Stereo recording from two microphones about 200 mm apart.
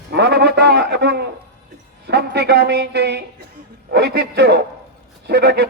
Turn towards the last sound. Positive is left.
turn(degrees=-55)  # may be behind; listen again after turning